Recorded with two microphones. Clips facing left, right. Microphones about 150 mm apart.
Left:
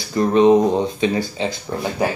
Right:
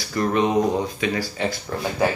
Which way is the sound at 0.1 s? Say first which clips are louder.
Left 7 dB; 25° left (ahead or behind).